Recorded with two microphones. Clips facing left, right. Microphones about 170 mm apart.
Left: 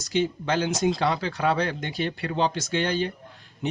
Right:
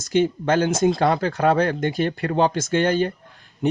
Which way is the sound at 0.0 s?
50° right (ahead or behind).